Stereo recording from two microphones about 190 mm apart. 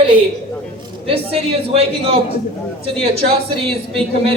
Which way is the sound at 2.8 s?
30° right (ahead or behind).